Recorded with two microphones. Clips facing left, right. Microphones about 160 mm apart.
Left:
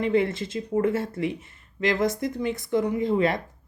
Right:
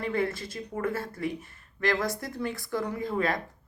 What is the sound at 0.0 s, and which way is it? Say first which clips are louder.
Speech: left 6 dB; 20° left (ahead or behind).